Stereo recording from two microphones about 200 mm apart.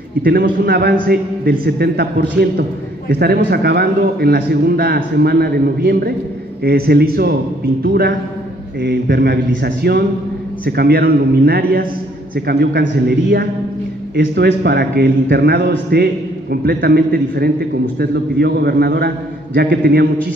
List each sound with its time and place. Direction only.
0.2 s a man's voice: 50° right (ahead or behind)